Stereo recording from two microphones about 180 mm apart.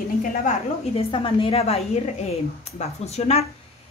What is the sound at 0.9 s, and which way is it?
Speech, 30° left (ahead or behind).